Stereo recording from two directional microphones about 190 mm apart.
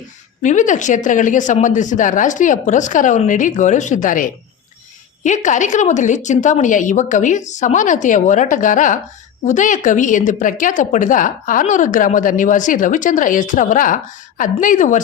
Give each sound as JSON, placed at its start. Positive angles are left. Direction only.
{"t": 0.4, "sound": "speech", "side_deg": 40}